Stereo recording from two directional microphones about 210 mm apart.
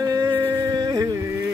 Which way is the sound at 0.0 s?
15° right (ahead or behind).